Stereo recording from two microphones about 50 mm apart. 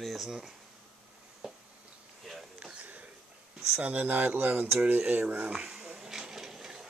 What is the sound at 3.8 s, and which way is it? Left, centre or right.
Speech, right.